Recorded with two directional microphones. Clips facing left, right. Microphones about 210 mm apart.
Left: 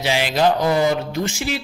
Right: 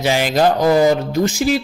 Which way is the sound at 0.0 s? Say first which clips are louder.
Right 3 dB; 45° right (ahead or behind).